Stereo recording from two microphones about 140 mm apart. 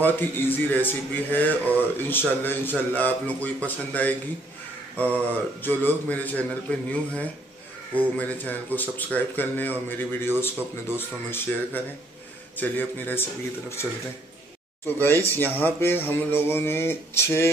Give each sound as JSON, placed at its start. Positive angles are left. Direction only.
{"t": 0.0, "sound": "speech", "side_deg": 15}
{"t": 5.1, "sound": "speech", "side_deg": 15}
{"t": 14.9, "sound": "speech", "side_deg": 15}